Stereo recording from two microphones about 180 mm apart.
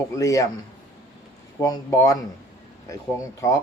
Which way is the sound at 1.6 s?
15° left (ahead or behind).